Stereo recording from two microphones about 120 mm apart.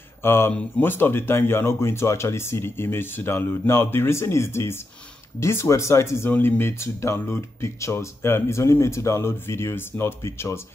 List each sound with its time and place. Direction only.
0.2 s speech: 20° left (ahead or behind)